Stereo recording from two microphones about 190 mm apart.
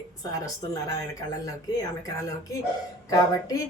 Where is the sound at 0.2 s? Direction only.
20° left (ahead or behind).